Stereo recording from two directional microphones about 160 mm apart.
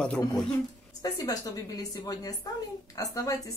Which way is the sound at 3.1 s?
20° left (ahead or behind).